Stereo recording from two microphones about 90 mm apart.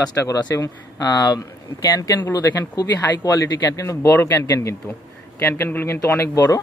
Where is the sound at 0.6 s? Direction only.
45° left (ahead or behind).